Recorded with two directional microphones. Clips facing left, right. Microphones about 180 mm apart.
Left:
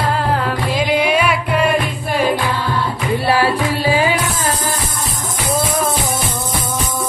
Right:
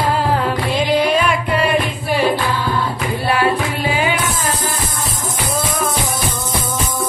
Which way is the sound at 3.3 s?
30° left (ahead or behind).